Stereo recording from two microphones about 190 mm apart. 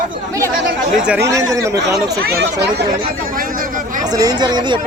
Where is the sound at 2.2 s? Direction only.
60° right (ahead or behind).